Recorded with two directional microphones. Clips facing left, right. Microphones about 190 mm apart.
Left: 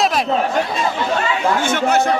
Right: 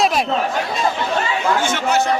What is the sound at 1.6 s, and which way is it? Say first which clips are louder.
Speech: left 2 dB; 55° left (ahead or behind).